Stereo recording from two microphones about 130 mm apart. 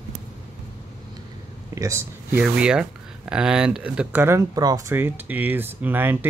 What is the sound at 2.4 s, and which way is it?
Speech, 5° right (ahead or behind).